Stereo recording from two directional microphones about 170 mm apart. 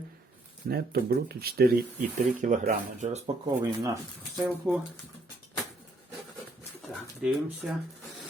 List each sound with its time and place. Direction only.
0.7 s speech: 65° right (ahead or behind); by 3.3 s 40° right (ahead or behind)
3.4 s speech: 15° right (ahead or behind)
4.4 s speech: centre (ahead or behind)
6.9 s speech: centre (ahead or behind)